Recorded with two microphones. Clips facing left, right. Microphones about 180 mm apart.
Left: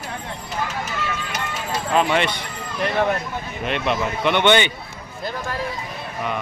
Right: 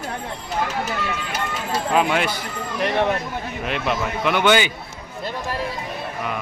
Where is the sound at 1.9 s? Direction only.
5° right (ahead or behind).